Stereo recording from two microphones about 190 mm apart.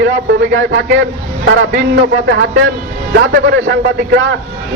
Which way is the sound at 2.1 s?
65° right (ahead or behind).